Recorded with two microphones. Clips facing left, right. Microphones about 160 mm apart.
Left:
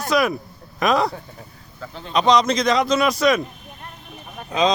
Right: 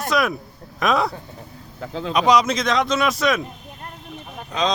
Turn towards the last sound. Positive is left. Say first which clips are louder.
# left 3 dB
turn(degrees=5)  # may be behind; listen again after turning